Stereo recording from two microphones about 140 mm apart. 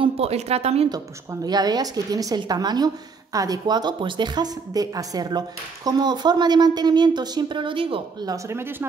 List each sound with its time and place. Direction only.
0.0 s speech: 45° right (ahead or behind)
0.8 s a woman's voice: 30° right (ahead or behind)
8.3 s speech: 20° right (ahead or behind)